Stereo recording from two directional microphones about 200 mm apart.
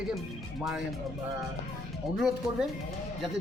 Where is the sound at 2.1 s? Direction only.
Centre (ahead or behind).